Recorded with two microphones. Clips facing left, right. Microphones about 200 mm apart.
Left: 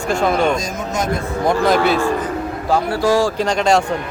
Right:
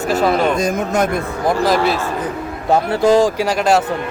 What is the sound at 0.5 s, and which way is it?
Speech, 60° right (ahead or behind).